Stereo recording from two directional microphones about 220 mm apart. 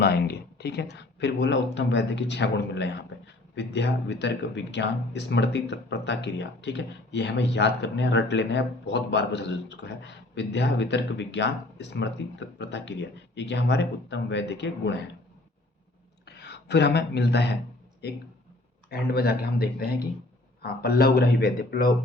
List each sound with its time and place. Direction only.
0.0 s speech: 45° left (ahead or behind)
16.2 s speech: 50° left (ahead or behind)
18.9 s speech: 45° left (ahead or behind)